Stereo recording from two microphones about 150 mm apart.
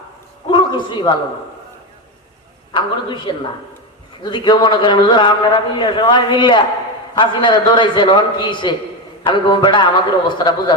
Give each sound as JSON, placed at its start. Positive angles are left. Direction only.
{"t": 0.5, "sound": "a man's voice", "side_deg": 30}
{"t": 2.7, "sound": "a man's voice", "side_deg": 30}